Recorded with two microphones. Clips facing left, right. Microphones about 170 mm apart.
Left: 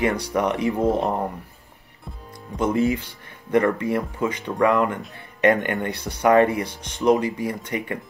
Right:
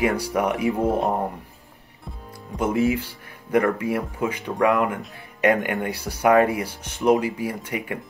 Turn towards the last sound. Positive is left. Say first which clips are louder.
# left 1 dB
turn(degrees=-5)  # may be behind; listen again after turning